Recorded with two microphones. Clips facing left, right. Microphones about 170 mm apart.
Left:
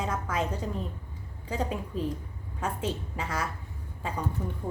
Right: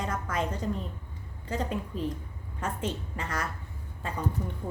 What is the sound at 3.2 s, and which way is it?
Speech, 10° left (ahead or behind).